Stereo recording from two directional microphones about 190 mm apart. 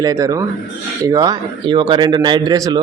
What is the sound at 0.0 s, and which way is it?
A man's voice, 15° right (ahead or behind).